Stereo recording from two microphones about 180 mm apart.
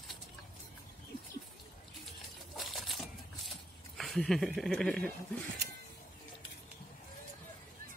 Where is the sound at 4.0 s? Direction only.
Centre (ahead or behind).